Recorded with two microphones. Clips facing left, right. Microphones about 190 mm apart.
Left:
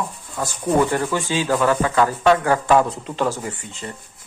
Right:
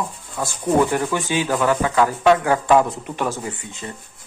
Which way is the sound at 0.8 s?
15° right (ahead or behind).